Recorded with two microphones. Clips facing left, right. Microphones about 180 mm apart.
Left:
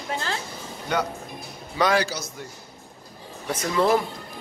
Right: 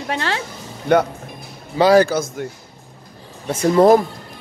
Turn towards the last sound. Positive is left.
turn(degrees=-40)  # may be behind; listen again after turning